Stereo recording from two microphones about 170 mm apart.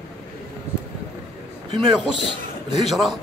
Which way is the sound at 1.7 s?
30° right (ahead or behind).